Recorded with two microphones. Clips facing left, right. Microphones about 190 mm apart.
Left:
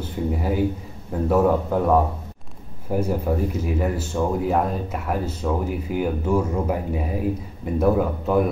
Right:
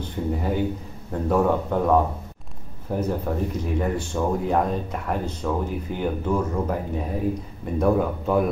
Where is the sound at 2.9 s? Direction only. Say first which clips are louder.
Left 3 dB; 10° left (ahead or behind).